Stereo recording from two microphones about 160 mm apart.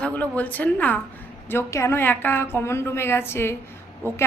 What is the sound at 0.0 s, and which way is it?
A woman's voice, 10° left (ahead or behind).